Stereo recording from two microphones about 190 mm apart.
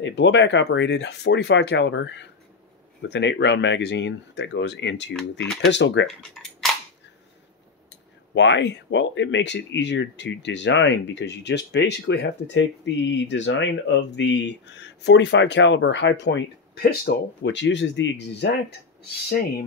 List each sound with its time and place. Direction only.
0.0 s speech: 70° left (ahead or behind)
5.4 s speech: centre (ahead or behind)
5.7 s speech: 70° left (ahead or behind)
6.0 s speech: centre (ahead or behind)
8.4 s speech: 70° left (ahead or behind)
19.2 s speech: 55° left (ahead or behind)